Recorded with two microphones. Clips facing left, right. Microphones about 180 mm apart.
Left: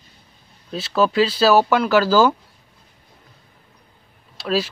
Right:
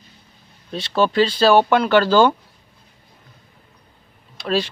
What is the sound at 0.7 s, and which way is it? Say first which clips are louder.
Speech: even; 5° left (ahead or behind).